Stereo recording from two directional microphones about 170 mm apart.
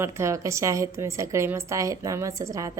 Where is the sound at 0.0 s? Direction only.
15° right (ahead or behind).